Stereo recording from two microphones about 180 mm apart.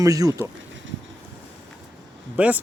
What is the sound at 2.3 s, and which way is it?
Speech, 5° right (ahead or behind).